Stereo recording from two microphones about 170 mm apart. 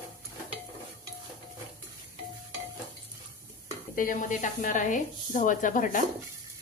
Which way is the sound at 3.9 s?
50° left (ahead or behind).